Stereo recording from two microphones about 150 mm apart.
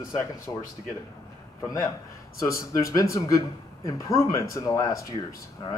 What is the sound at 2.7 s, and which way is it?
Speech, 20° left (ahead or behind).